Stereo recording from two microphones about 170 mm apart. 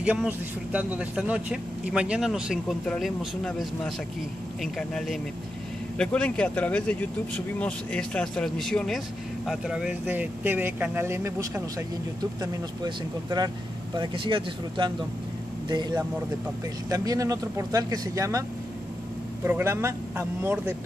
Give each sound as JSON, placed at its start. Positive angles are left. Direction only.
{"t": 0.0, "sound": "speech", "side_deg": -10}
{"t": 16.9, "sound": "speech", "side_deg": -20}
{"t": 19.4, "sound": "speech", "side_deg": -15}